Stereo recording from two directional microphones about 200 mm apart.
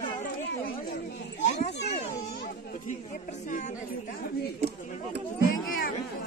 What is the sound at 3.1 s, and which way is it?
Speech, 40° left (ahead or behind).